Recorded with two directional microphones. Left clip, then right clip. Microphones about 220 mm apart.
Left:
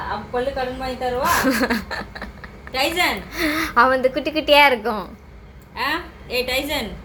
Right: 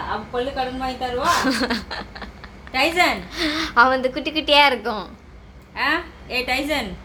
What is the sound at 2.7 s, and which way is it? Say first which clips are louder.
Speech: right 2 dB; 25° right (ahead or behind).